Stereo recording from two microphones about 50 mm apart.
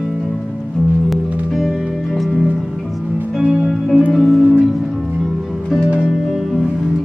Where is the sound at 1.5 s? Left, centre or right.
Centre.